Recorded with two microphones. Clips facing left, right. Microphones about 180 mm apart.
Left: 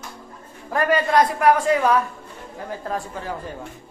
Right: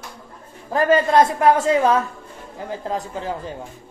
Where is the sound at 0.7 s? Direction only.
25° right (ahead or behind).